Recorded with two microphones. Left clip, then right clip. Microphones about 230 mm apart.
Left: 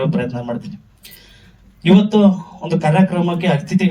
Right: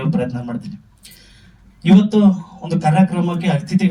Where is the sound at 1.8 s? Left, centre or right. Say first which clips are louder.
Left 2 dB; centre.